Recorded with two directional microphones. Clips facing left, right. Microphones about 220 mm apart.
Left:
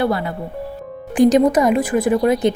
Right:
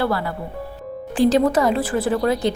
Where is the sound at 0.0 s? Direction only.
20° left (ahead or behind).